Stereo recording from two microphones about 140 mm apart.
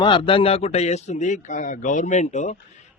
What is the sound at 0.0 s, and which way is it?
A man's voice, 35° left (ahead or behind).